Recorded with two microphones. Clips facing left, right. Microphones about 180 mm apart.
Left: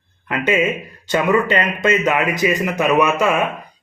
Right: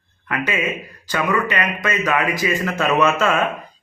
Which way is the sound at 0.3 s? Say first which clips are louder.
Left 5 dB; 25° left (ahead or behind).